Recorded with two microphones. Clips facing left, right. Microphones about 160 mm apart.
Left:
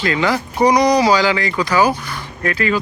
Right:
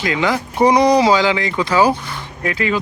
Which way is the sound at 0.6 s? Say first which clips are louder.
Right 1 dB; 25° right (ahead or behind).